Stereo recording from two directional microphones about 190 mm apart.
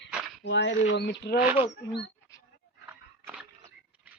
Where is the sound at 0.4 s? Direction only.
65° left (ahead or behind).